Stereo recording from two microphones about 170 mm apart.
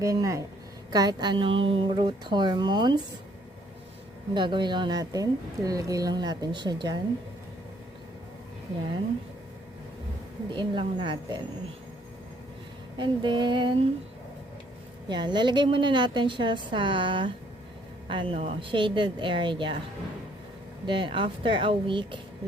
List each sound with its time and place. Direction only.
0.0 s a woman's voice: 20° right (ahead or behind)
4.4 s a woman's voice: 25° right (ahead or behind)
10.5 s a woman's voice: 30° right (ahead or behind)
13.0 s a woman's voice: 25° right (ahead or behind)
15.1 s a woman's voice: 25° right (ahead or behind)
20.8 s a woman's voice: 30° right (ahead or behind)